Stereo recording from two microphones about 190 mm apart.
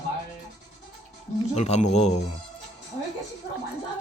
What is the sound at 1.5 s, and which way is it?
Speech, 35° left (ahead or behind).